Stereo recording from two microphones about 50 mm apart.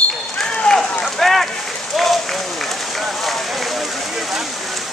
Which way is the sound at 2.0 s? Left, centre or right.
Centre.